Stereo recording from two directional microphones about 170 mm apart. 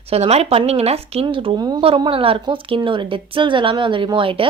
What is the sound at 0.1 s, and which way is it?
A woman's voice, 40° right (ahead or behind).